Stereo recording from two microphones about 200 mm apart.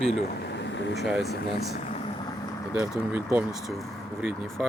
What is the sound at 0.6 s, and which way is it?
Vehicle, 60° left (ahead or behind).